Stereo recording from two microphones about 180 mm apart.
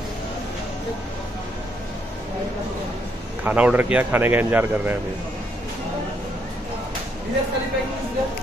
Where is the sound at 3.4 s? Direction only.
5° right (ahead or behind).